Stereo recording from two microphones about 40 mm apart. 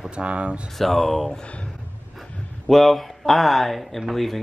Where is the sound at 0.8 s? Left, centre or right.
Centre.